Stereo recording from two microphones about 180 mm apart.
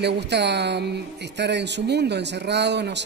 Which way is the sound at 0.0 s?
70° right (ahead or behind).